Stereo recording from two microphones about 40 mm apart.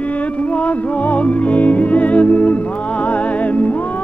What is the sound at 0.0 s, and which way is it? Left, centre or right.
Music, left.